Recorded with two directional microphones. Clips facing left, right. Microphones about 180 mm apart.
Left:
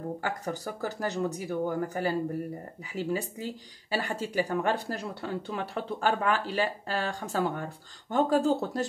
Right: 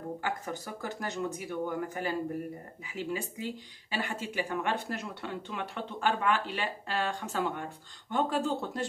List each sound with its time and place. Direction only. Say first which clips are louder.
0.2 s speech: left 3 dB; 40° left (ahead or behind)